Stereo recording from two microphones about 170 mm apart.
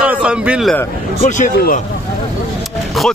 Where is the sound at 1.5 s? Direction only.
60° left (ahead or behind).